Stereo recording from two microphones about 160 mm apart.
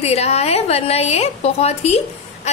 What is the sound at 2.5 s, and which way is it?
Duck, 45° left (ahead or behind).